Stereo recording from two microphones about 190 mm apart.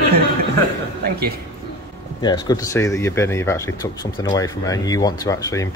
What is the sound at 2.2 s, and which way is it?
A man's voice, 20° left (ahead or behind).